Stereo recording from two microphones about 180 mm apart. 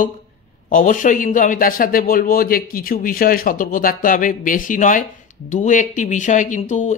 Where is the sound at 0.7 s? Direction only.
45° left (ahead or behind).